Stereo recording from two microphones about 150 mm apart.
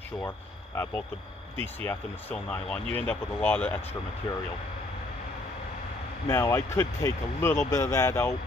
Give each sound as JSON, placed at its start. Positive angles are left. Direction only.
{"t": 1.6, "sound": "speech", "side_deg": 15}
{"t": 6.2, "sound": "speech", "side_deg": 20}